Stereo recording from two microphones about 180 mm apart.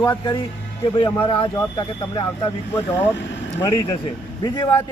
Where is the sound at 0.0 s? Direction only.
25° left (ahead or behind).